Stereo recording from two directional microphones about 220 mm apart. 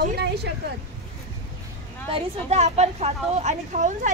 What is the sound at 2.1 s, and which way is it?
A woman's voice, 30° right (ahead or behind).